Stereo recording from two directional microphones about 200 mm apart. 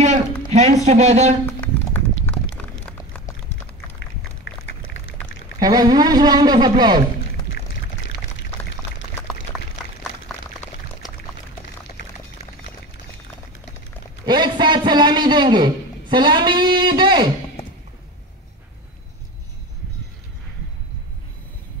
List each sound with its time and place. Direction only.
0.5 s speech: 35° right (ahead or behind)
1.4 s a sound: 10° left (ahead or behind)
5.6 s a man's voice: 20° right (ahead or behind)
7.5 s pour: 60° left (ahead or behind)
9.5 s a sound: 5° right (ahead or behind)
10.2 s pour: 10° left (ahead or behind)
14.2 s a man's voice: 20° right (ahead or behind)